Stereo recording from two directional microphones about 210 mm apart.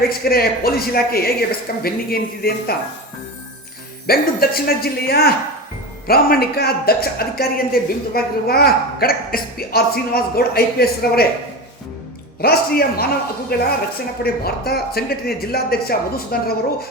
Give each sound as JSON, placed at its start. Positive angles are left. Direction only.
{"t": 0.1, "sound": "speech", "side_deg": 45}
{"t": 4.0, "sound": "speech", "side_deg": 45}
{"t": 12.4, "sound": "speech", "side_deg": 45}